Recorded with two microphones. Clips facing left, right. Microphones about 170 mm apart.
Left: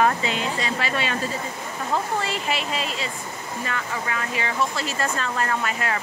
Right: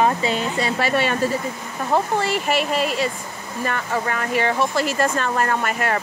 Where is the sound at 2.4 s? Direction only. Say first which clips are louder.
Right 6 dB; 55° right (ahead or behind).